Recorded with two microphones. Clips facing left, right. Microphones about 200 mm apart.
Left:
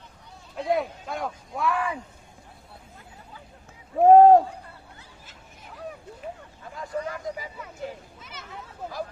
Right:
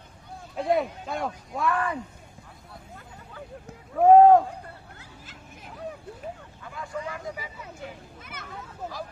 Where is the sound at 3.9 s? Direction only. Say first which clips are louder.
Left 1 dB; 35° left (ahead or behind).